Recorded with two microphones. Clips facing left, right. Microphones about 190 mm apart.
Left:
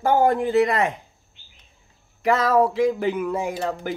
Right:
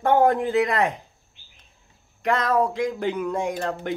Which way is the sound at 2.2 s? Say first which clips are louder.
Left 3 dB; 5° left (ahead or behind).